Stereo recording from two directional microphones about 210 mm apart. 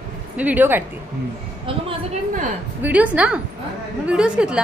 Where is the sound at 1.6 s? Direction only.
30° right (ahead or behind).